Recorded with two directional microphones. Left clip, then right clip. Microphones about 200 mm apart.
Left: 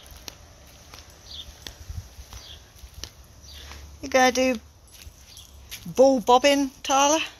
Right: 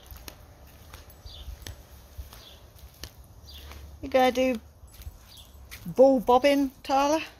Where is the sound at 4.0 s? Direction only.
10° left (ahead or behind).